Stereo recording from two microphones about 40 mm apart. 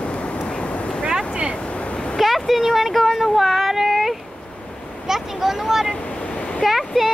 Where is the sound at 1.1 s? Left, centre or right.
Centre.